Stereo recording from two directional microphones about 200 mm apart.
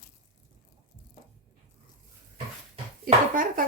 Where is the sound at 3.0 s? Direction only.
45° right (ahead or behind).